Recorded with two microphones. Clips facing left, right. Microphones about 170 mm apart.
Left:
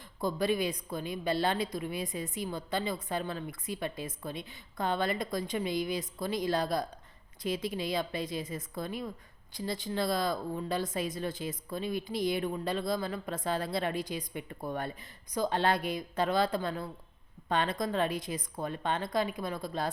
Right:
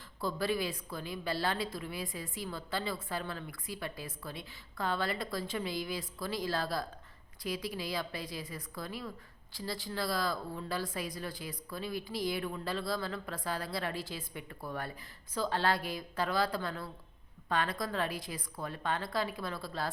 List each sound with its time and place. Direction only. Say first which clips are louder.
0.2 s a woman's voice: left 4 dB; 20° left (ahead or behind)